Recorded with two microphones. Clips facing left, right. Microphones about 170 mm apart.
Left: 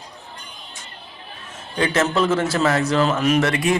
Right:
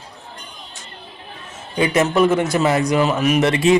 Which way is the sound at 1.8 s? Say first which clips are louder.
Right 4 dB; 15° right (ahead or behind).